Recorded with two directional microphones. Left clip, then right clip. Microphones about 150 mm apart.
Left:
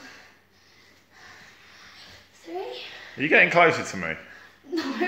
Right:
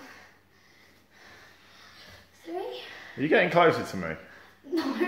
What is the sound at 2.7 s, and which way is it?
Speech, 10° right (ahead or behind).